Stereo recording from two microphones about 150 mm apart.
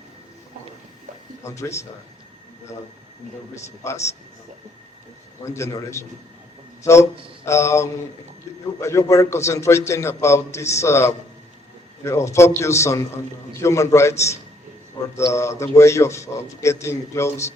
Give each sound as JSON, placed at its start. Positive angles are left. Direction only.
{"t": 1.5, "sound": "a man's voice", "side_deg": 20}
{"t": 3.5, "sound": "a man's voice", "side_deg": 20}
{"t": 5.5, "sound": "a man's voice", "side_deg": 20}
{"t": 7.4, "sound": "a man's voice", "side_deg": 20}
{"t": 15.3, "sound": "a man's voice", "side_deg": 20}